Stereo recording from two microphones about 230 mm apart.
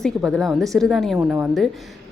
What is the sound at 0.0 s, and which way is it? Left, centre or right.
Speech, centre.